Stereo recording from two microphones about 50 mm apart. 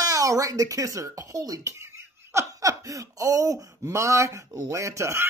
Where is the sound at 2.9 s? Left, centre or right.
Right.